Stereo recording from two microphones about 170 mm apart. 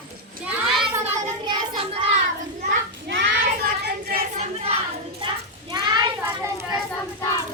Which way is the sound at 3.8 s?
55° right (ahead or behind).